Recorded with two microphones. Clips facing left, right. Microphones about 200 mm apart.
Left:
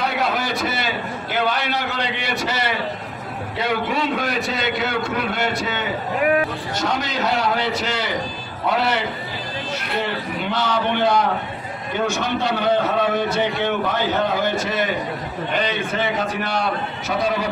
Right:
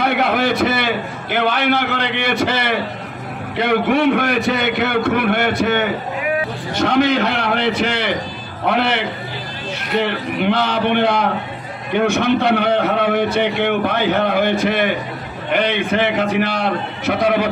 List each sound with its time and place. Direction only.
0.0 s a man's voice: 60° right (ahead or behind)
10.0 s a man's voice: 65° right (ahead or behind)